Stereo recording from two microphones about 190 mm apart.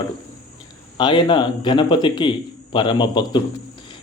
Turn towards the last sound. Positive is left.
turn(degrees=25)  # may be behind; listen again after turning